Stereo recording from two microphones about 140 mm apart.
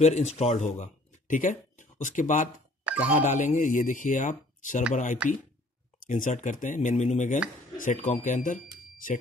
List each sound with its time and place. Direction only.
0.0 s speech: 50° left (ahead or behind); by 2.5 s 65° left (ahead or behind)
2.8 s music: 10° right (ahead or behind)
3.1 s speech: 60° left (ahead or behind)
5.2 s speech: 10° right (ahead or behind)
6.0 s speech: 65° left (ahead or behind)